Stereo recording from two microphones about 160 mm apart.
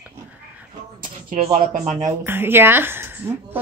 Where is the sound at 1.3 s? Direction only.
45° right (ahead or behind).